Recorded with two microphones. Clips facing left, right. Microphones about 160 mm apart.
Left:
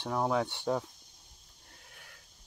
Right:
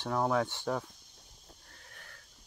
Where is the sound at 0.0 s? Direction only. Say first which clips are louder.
Even; 15° left (ahead or behind).